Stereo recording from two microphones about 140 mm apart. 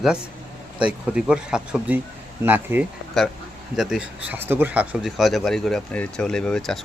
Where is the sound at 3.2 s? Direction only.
Centre (ahead or behind).